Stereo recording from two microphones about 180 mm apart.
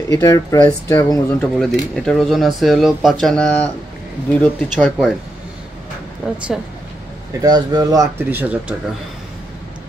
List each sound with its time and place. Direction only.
0.1 s speech: 15° left (ahead or behind)
1.4 s speech: 5° left (ahead or behind)
6.3 s speech: 5° right (ahead or behind)
7.4 s speech: 20° right (ahead or behind)